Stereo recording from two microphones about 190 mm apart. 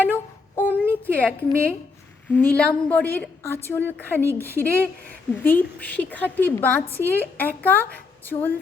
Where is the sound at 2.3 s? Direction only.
5° left (ahead or behind).